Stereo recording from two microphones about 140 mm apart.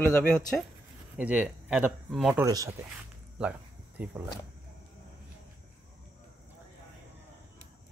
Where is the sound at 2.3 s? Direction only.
25° right (ahead or behind).